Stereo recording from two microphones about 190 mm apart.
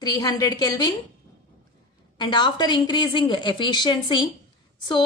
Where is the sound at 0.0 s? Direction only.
20° left (ahead or behind).